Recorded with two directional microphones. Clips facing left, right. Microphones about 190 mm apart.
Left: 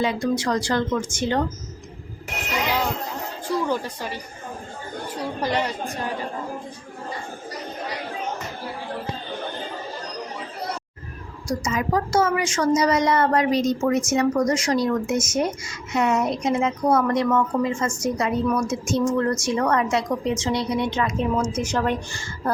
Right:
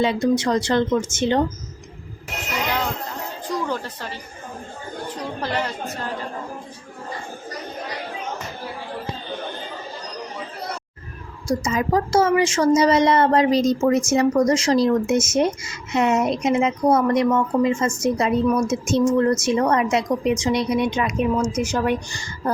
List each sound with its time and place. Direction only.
0.0 s a woman's voice: 25° right (ahead or behind)
2.6 s a sound: 10° left (ahead or behind)
3.7 s speech: 10° left (ahead or behind)
5.4 s speech: 15° left (ahead or behind)
11.4 s a woman's voice: 30° right (ahead or behind)